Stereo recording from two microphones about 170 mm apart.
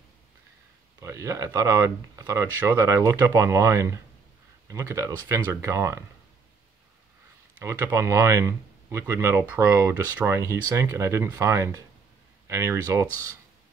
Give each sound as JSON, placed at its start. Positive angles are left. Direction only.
{"t": 1.0, "sound": "speech", "side_deg": -20}
{"t": 7.5, "sound": "speech", "side_deg": -15}